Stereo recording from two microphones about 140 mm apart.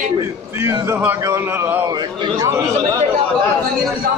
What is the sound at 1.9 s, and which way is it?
Speech, 30° right (ahead or behind).